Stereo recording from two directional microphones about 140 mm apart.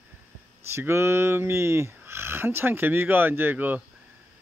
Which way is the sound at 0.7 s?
20° right (ahead or behind).